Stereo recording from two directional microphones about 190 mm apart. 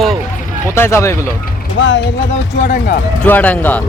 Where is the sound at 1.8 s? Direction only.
75° left (ahead or behind).